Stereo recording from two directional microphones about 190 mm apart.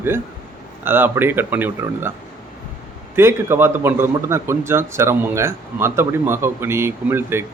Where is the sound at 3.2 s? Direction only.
15° right (ahead or behind).